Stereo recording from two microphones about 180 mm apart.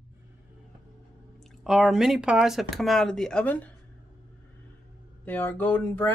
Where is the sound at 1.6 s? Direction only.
5° right (ahead or behind).